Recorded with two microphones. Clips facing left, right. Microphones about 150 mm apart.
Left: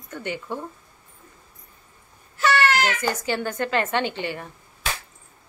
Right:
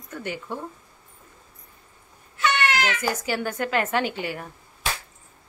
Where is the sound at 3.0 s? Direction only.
5° right (ahead or behind).